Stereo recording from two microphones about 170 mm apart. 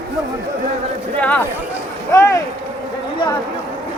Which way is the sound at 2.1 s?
15° left (ahead or behind).